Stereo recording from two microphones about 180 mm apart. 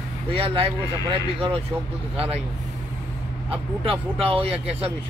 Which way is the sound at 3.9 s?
30° right (ahead or behind).